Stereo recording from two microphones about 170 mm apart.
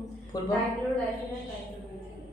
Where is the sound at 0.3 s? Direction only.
25° left (ahead or behind).